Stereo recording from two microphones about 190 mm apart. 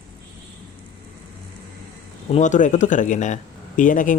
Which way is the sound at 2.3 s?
40° left (ahead or behind).